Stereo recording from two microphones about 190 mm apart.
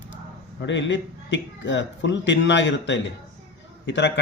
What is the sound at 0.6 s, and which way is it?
A man's voice, 70° left (ahead or behind).